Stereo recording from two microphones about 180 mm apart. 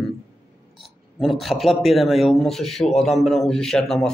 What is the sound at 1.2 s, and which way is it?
A man's voice, centre (ahead or behind).